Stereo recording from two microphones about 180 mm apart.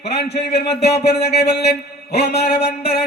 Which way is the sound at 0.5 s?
65° left (ahead or behind).